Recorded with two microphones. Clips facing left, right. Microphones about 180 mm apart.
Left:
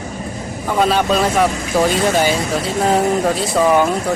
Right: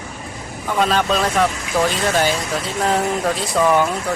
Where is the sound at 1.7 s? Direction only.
30° left (ahead or behind).